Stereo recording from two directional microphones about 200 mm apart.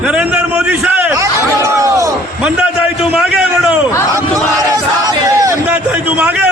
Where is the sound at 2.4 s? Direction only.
5° right (ahead or behind).